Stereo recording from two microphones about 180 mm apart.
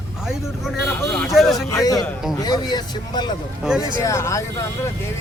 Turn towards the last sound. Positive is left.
turn(degrees=15)  # may be behind; listen again after turning